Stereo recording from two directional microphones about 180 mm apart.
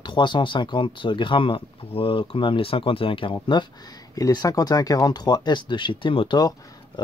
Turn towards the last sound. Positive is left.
turn(degrees=25)  # may be behind; listen again after turning